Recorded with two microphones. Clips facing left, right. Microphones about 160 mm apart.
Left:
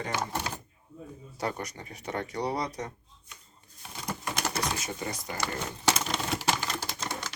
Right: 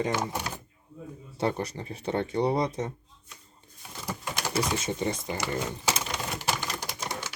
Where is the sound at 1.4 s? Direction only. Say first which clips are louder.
Right 5 dB; 30° right (ahead or behind).